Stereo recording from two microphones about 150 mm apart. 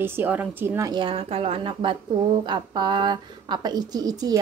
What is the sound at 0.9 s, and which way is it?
Speech, 35° right (ahead or behind).